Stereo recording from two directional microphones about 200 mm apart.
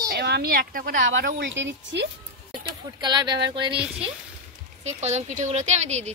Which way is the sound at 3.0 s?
20° right (ahead or behind).